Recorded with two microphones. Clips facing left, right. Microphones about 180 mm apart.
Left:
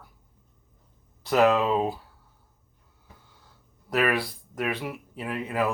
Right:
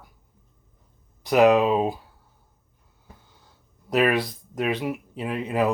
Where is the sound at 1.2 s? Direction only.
15° right (ahead or behind).